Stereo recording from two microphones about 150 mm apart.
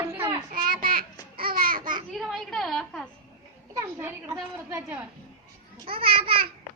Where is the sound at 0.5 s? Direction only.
70° right (ahead or behind).